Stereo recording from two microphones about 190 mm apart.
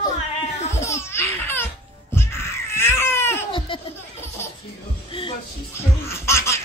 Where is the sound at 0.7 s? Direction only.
15° left (ahead or behind).